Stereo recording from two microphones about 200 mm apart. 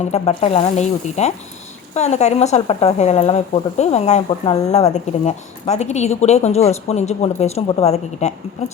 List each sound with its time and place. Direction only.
0.0 s speech: 30° left (ahead or behind)